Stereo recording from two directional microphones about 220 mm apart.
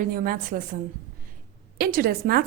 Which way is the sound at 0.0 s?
40° right (ahead or behind).